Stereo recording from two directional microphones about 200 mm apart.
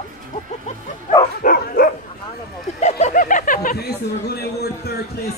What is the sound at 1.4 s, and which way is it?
Speech, 45° left (ahead or behind).